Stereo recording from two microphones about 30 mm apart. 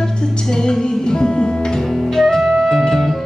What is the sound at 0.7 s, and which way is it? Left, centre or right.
Music, left.